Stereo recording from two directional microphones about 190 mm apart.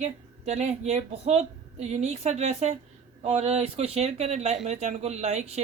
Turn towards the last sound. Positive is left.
turn(degrees=-35)  # may be behind; listen again after turning